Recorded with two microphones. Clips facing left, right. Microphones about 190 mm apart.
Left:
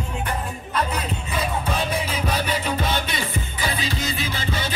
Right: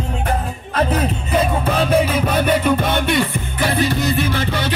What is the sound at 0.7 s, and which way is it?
Speech, 60° right (ahead or behind).